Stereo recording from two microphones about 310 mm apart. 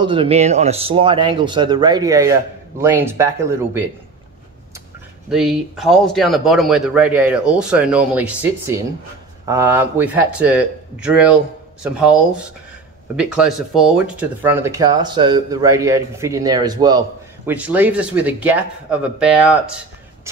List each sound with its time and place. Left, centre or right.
0.0 s speech: centre
5.3 s speech: centre